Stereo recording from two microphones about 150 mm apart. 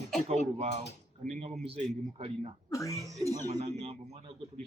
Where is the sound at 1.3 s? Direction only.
50° right (ahead or behind).